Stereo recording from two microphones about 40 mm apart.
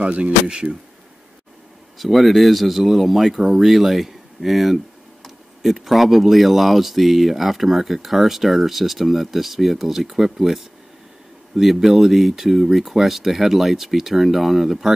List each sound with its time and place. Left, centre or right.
0.0 s speech: right
2.0 s speech: centre
11.6 s speech: centre